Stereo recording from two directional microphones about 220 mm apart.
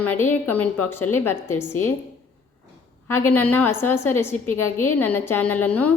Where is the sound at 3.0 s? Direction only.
10° left (ahead or behind).